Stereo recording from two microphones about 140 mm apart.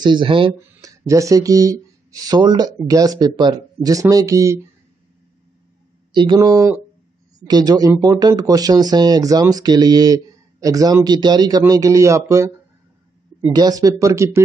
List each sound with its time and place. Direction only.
0.0 s speech: 35° right (ahead or behind)
0.6 s speech: 25° right (ahead or behind)
6.1 s speech: 30° right (ahead or behind)
13.5 s speech: 25° right (ahead or behind)